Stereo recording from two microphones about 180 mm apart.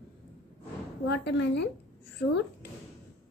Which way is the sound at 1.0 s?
70° left (ahead or behind).